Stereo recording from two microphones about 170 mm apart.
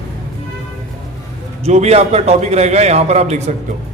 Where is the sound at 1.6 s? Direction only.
40° right (ahead or behind).